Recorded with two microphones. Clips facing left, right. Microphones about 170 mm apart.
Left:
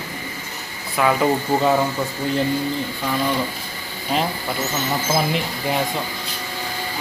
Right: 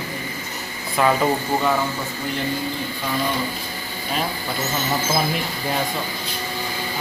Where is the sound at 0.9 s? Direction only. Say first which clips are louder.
Even; centre (ahead or behind).